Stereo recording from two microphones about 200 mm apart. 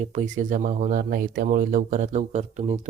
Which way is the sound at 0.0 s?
35° right (ahead or behind).